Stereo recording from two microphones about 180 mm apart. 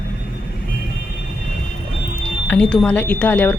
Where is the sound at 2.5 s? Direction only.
5° left (ahead or behind).